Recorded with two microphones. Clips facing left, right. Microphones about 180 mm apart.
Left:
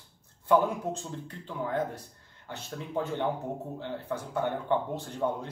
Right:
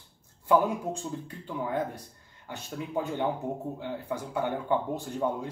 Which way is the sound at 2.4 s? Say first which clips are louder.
Right 2 dB; 10° right (ahead or behind).